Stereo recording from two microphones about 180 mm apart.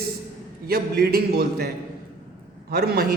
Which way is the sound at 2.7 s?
60° right (ahead or behind).